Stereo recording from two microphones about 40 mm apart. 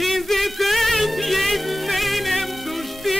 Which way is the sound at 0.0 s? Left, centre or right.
Centre.